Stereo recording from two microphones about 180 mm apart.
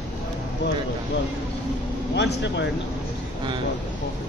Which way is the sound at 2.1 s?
75° left (ahead or behind).